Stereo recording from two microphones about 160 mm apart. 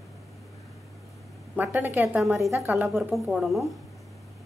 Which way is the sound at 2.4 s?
20° right (ahead or behind).